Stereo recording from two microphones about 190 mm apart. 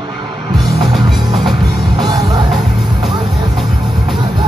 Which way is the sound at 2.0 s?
20° right (ahead or behind).